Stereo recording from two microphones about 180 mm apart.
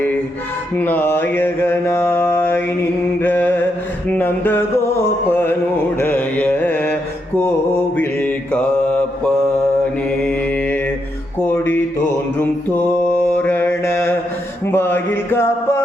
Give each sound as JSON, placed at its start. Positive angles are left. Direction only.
{"t": 0.8, "sound": "mantra", "side_deg": 10}
{"t": 10.1, "sound": "mantra", "side_deg": 5}
{"t": 11.4, "sound": "music", "side_deg": 10}
{"t": 13.2, "sound": "mantra", "side_deg": 10}
{"t": 14.7, "sound": "music", "side_deg": 10}